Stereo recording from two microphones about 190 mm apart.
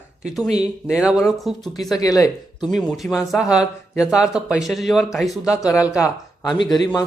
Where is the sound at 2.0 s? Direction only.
20° left (ahead or behind).